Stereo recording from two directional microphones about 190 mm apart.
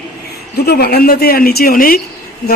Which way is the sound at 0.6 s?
55° left (ahead or behind).